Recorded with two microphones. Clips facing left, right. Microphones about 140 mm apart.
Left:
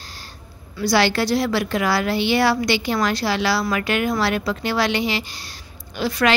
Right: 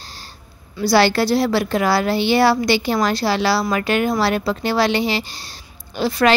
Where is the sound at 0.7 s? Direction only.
35° right (ahead or behind).